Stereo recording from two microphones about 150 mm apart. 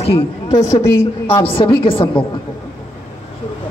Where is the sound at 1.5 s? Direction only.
35° left (ahead or behind).